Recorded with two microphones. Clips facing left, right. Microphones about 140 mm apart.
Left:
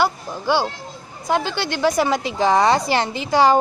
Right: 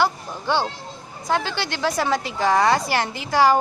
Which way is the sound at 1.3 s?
15° left (ahead or behind).